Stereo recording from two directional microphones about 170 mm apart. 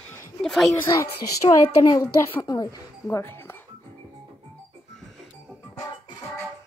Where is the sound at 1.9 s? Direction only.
15° left (ahead or behind).